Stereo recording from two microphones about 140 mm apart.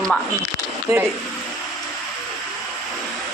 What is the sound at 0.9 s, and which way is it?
Speech, 20° right (ahead or behind).